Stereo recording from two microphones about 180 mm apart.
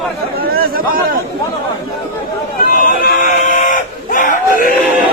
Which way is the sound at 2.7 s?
45° left (ahead or behind).